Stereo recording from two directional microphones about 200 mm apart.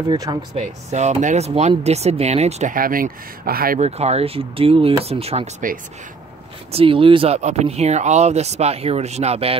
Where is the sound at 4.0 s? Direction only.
30° right (ahead or behind).